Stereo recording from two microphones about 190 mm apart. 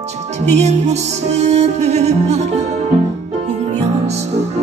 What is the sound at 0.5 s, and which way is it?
Music, 35° right (ahead or behind).